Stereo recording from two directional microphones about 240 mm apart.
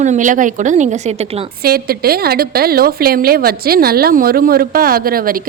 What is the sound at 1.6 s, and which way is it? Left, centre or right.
Speech, right.